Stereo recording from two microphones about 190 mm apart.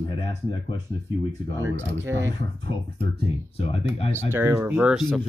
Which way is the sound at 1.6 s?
15° right (ahead or behind).